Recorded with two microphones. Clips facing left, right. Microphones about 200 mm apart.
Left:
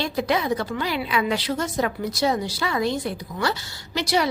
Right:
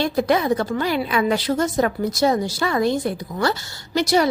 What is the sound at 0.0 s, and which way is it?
A woman's voice, 50° right (ahead or behind).